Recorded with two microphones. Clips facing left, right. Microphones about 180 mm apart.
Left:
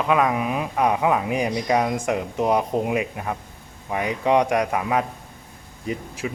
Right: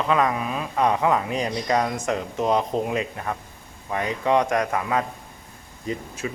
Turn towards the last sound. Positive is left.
turn(degrees=15)  # may be behind; listen again after turning